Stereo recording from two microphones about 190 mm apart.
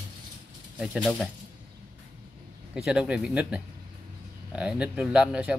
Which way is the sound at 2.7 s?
5° right (ahead or behind).